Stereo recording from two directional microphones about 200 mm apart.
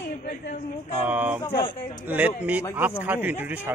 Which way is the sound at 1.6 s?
20° left (ahead or behind).